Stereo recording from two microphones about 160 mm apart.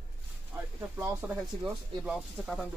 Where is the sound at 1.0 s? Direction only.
20° right (ahead or behind).